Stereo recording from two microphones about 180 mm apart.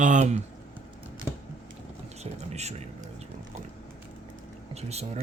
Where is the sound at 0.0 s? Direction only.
45° right (ahead or behind).